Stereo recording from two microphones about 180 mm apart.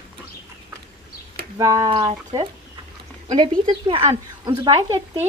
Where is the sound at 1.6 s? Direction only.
20° right (ahead or behind).